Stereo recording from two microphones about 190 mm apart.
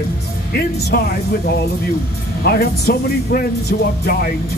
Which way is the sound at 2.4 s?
55° left (ahead or behind).